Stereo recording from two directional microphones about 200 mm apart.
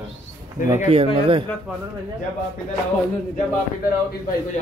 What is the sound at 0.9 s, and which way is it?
Speech, 30° right (ahead or behind).